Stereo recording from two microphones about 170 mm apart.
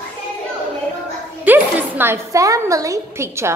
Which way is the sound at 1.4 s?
10° right (ahead or behind).